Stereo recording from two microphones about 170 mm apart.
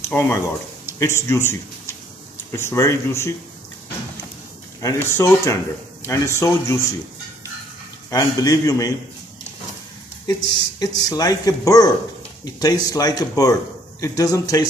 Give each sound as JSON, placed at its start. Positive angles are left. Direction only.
{"t": 0.0, "sound": "a man's voice", "side_deg": 15}
{"t": 4.8, "sound": "speech", "side_deg": 15}
{"t": 8.1, "sound": "speech", "side_deg": 20}
{"t": 10.2, "sound": "speech", "side_deg": 25}